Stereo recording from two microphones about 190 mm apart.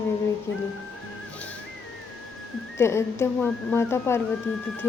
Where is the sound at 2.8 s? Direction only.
15° left (ahead or behind).